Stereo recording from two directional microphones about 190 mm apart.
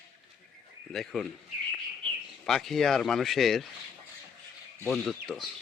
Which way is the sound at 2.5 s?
Centre (ahead or behind).